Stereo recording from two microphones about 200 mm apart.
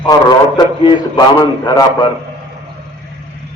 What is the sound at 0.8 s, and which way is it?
Speech, 20° left (ahead or behind).